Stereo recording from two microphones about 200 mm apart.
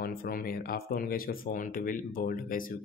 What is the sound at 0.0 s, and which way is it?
Speech, 45° left (ahead or behind).